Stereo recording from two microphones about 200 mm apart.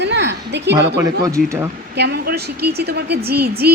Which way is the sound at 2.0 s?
55° right (ahead or behind).